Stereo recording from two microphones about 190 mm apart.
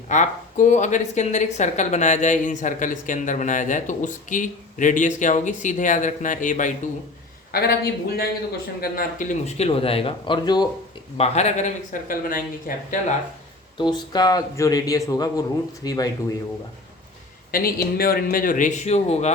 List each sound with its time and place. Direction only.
0.1 s speech: 40° left (ahead or behind)
7.5 s speech: 55° left (ahead or behind); by 10.7 s 20° left (ahead or behind)
11.2 s speech: 35° left (ahead or behind)
13.7 s a man's voice: 20° left (ahead or behind)
17.5 s a man's voice: 50° left (ahead or behind); by 19.3 s 35° left (ahead or behind)